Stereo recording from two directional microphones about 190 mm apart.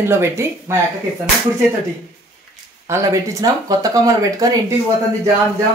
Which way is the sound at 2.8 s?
15° right (ahead or behind).